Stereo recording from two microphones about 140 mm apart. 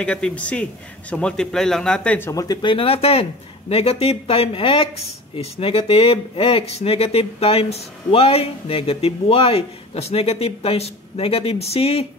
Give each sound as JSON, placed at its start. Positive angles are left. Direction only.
{"t": 0.0, "sound": "speech", "side_deg": 5}